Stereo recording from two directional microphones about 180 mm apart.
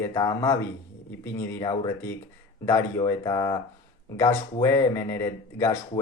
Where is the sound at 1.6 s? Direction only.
15° left (ahead or behind).